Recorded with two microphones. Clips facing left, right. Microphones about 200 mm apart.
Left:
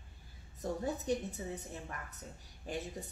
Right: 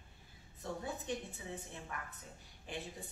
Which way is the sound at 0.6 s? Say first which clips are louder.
Left 6 dB; 40° left (ahead or behind).